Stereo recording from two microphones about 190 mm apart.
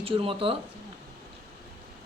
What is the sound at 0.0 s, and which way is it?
Speech, 30° right (ahead or behind).